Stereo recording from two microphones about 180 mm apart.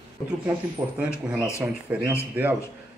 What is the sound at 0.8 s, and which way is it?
Speech, 15° right (ahead or behind).